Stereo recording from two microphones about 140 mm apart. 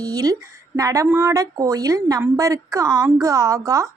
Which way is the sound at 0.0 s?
25° right (ahead or behind).